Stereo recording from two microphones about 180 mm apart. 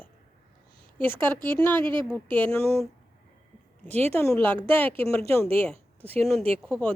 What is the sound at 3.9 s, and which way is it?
Speech, 35° right (ahead or behind).